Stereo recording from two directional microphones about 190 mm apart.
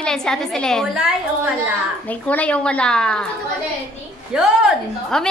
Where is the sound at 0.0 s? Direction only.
5° left (ahead or behind).